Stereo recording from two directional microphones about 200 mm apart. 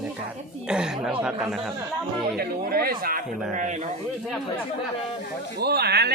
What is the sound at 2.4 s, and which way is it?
Speech, 50° right (ahead or behind).